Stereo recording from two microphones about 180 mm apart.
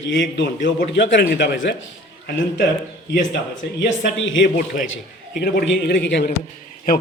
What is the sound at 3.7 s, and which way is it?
Speech, 90° left.